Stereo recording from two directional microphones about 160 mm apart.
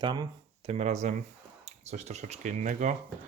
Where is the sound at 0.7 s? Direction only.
45° right (ahead or behind).